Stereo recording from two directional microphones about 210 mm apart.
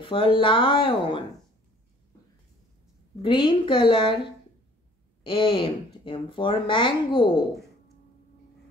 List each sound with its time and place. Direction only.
0.0 s speech: 25° left (ahead or behind)
3.2 s speech: 20° left (ahead or behind)
5.2 s speech: 25° left (ahead or behind)